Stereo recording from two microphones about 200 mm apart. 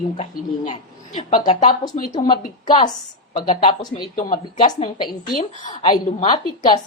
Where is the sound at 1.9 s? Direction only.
40° left (ahead or behind).